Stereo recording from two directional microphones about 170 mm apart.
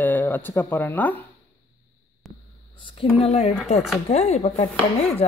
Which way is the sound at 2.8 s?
30° left (ahead or behind).